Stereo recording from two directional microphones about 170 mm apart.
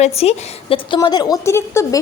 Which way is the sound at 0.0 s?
35° left (ahead or behind).